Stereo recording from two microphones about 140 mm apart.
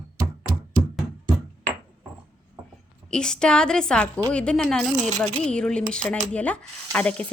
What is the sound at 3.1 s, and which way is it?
Speech, 5° left (ahead or behind).